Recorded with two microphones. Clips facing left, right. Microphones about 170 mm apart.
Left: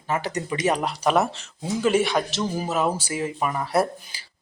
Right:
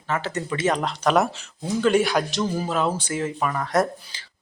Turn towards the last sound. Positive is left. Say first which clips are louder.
# even
turn(degrees=10)  # may be behind; listen again after turning